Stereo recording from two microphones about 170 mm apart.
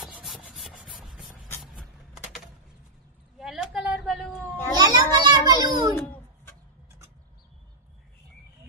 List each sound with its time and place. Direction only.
0.0 s rub: centre (ahead or behind)
0.9 s writing: centre (ahead or behind)
1.6 s vehicle: centre (ahead or behind)
3.3 s a sound: 5° right (ahead or behind)
4.7 s children playing: 25° right (ahead or behind)
6.0 s chicken: 10° left (ahead or behind)